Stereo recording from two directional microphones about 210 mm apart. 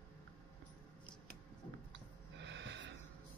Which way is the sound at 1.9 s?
55° right (ahead or behind).